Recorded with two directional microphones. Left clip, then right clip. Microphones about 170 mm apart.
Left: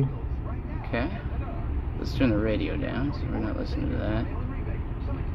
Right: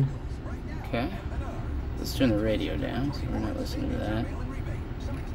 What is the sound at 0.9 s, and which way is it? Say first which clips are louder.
Speech: left 1 dB; 15° right (ahead or behind).